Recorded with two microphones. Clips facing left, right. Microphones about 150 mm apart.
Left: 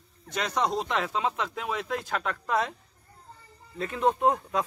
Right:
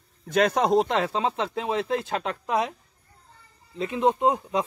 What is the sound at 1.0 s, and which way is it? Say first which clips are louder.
Speech: right 4 dB; 30° right (ahead or behind).